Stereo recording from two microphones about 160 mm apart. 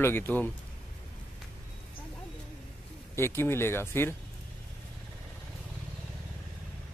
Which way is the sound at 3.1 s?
15° left (ahead or behind).